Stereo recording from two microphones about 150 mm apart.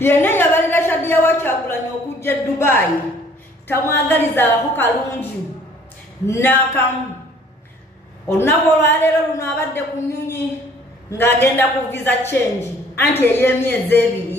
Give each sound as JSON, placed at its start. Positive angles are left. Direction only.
{"t": 0.0, "sound": "a woman's voice", "side_deg": 15}
{"t": 8.3, "sound": "speech", "side_deg": 15}